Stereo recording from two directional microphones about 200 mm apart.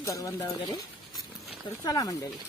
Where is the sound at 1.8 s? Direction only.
20° left (ahead or behind).